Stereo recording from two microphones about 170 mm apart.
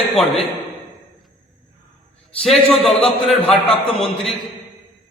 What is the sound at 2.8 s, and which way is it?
Speech, 35° left (ahead or behind).